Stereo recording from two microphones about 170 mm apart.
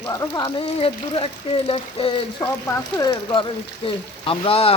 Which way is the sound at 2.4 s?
20° left (ahead or behind).